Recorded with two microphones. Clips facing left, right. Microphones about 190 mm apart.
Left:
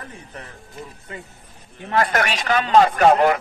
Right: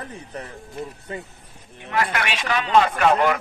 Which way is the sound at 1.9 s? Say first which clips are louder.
Left 4 dB; 45° left (ahead or behind).